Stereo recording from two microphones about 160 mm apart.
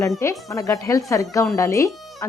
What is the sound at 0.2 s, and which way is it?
A woman's voice, 20° left (ahead or behind).